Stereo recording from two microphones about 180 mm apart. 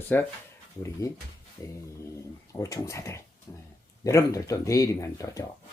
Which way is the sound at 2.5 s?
15° left (ahead or behind).